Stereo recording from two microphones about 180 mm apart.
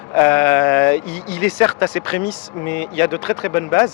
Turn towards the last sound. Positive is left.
turn(degrees=15)  # may be behind; listen again after turning